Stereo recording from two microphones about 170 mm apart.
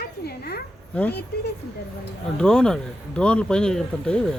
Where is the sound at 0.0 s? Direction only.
70° left (ahead or behind).